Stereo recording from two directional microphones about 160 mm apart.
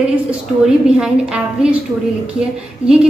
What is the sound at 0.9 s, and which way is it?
Speech, 5° right (ahead or behind).